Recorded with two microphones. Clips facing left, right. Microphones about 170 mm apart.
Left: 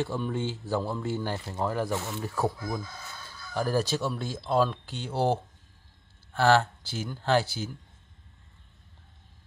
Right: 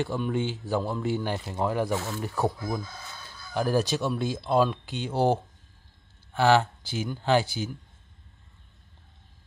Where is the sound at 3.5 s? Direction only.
20° right (ahead or behind).